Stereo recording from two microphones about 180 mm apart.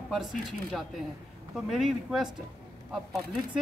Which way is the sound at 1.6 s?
Centre (ahead or behind).